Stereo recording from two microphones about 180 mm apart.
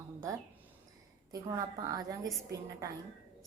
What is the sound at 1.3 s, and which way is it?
Speech, 20° right (ahead or behind).